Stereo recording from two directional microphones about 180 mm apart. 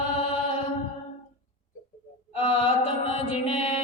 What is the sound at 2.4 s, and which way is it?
Mantra, 30° left (ahead or behind).